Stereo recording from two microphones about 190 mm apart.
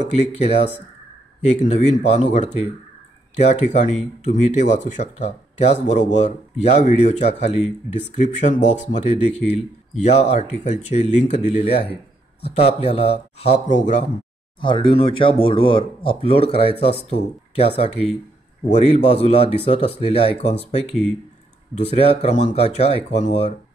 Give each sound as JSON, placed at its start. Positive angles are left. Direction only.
{"t": 0.1, "sound": "speech", "side_deg": 35}
{"t": 14.6, "sound": "speech", "side_deg": 25}
{"t": 21.9, "sound": "speech", "side_deg": 35}